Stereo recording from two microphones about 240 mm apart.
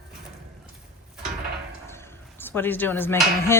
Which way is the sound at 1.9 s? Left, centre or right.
Centre.